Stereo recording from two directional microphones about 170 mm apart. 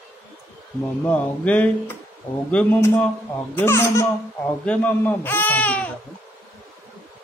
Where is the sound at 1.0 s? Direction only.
10° left (ahead or behind).